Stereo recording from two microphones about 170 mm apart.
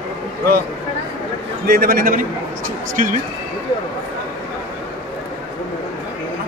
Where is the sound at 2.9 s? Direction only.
50° right (ahead or behind).